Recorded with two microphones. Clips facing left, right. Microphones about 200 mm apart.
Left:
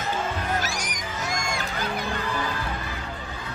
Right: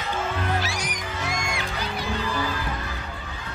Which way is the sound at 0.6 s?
45° left (ahead or behind).